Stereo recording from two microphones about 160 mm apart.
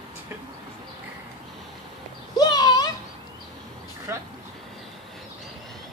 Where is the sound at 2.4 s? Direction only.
25° left (ahead or behind).